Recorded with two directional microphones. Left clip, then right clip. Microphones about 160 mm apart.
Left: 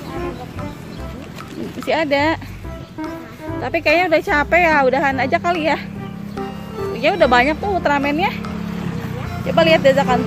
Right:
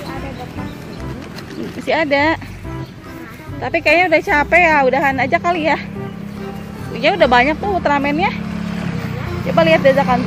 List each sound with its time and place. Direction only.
1.9 s speech: centre (ahead or behind)
3.6 s speech: 5° left (ahead or behind)
6.9 s speech: centre (ahead or behind)
8.6 s vehicle: 60° right (ahead or behind)
9.5 s speech: centre (ahead or behind)